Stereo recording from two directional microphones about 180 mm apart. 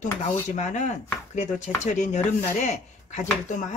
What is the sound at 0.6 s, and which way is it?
Speech, 40° left (ahead or behind).